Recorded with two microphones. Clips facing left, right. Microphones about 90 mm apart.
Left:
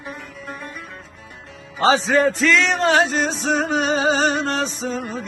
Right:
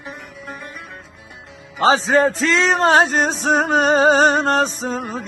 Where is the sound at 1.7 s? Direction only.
35° right (ahead or behind).